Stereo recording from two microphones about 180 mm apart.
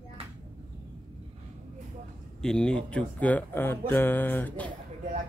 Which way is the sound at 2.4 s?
5° left (ahead or behind).